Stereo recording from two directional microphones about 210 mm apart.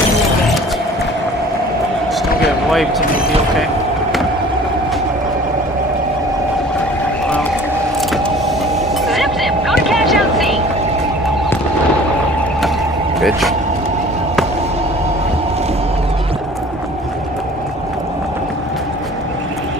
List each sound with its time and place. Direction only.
9.0 s vehicle: centre (ahead or behind)